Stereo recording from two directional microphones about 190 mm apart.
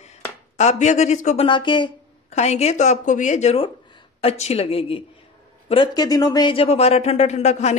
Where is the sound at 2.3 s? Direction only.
35° left (ahead or behind).